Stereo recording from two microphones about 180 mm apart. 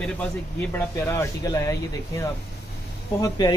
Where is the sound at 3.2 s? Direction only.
20° left (ahead or behind).